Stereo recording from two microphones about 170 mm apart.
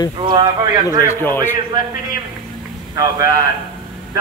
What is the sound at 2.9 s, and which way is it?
Speech, 20° right (ahead or behind).